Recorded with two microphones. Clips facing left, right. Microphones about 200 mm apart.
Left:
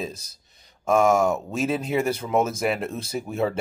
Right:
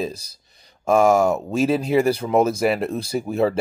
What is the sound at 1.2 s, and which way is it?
Speech, 35° right (ahead or behind).